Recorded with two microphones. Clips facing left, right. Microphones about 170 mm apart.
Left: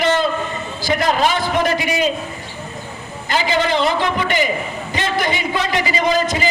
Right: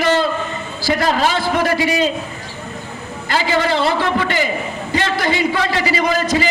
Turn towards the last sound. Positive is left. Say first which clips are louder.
# right 1 dB
turn(degrees=20)  # may be behind; listen again after turning